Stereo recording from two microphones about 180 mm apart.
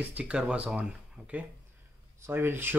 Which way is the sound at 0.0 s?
5° right (ahead or behind).